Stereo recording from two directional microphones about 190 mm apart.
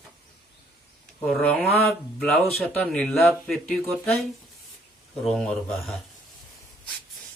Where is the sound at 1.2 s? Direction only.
5° left (ahead or behind).